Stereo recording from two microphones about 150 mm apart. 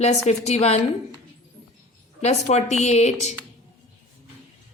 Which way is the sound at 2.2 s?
50° left (ahead or behind).